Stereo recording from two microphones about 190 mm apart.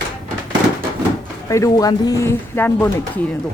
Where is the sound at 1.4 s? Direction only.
15° left (ahead or behind).